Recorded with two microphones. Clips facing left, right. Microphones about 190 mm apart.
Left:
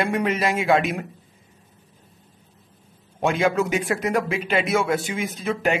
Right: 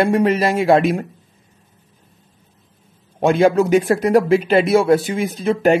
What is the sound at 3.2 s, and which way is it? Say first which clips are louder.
Speech: right 7 dB; 35° right (ahead or behind).